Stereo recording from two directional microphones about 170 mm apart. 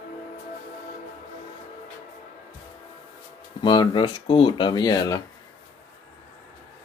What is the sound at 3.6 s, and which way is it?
Speech, 30° left (ahead or behind).